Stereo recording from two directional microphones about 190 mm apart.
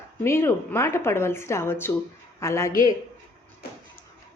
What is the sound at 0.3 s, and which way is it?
A woman's voice, 15° left (ahead or behind).